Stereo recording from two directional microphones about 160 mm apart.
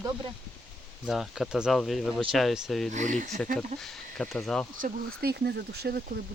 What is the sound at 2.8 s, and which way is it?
Speech, 50° right (ahead or behind).